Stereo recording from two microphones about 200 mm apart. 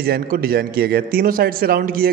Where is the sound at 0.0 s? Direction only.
50° right (ahead or behind).